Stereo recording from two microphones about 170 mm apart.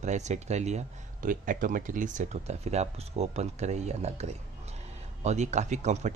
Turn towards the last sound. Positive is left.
turn(degrees=-45)  # may be behind; listen again after turning